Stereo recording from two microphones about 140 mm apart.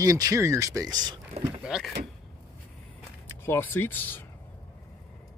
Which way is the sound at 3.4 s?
15° left (ahead or behind).